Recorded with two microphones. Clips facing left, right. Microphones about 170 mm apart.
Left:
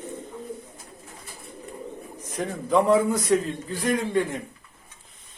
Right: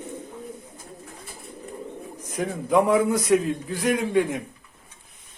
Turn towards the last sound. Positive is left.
turn(degrees=-10)  # may be behind; listen again after turning